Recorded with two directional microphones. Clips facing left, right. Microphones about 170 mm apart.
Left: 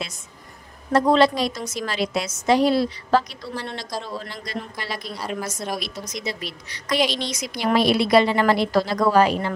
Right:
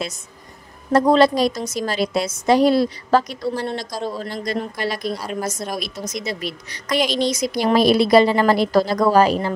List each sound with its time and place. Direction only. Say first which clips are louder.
0.9 s a woman's voice: right 3 dB; 40° right (ahead or behind)